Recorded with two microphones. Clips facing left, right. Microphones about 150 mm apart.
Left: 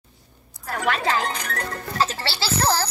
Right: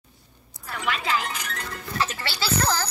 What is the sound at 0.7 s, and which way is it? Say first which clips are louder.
Speech: left 4 dB; 45° left (ahead or behind).